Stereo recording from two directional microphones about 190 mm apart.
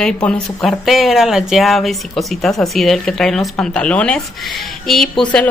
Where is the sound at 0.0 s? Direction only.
5° left (ahead or behind).